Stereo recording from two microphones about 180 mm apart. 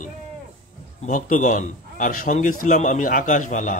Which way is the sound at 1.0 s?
45° left (ahead or behind).